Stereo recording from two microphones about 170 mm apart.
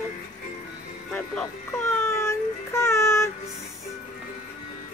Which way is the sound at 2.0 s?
15° left (ahead or behind).